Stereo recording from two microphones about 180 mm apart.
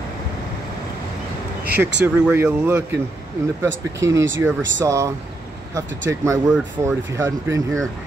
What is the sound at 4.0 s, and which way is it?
Speech, 15° right (ahead or behind).